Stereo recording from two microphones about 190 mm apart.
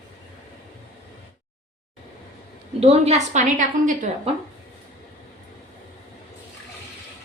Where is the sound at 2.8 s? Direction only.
35° right (ahead or behind).